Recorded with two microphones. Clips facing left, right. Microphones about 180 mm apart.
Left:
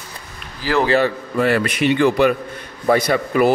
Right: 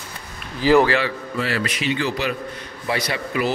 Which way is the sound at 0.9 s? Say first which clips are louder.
Left 5 dB; 50° left (ahead or behind).